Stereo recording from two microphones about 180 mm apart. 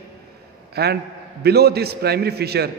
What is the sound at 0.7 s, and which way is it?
A man's voice, 65° right (ahead or behind).